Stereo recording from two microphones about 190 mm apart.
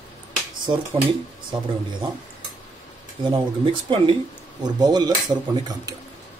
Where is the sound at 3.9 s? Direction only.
25° right (ahead or behind).